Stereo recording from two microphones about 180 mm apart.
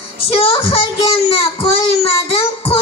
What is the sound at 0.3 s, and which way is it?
Child singing, 30° left (ahead or behind).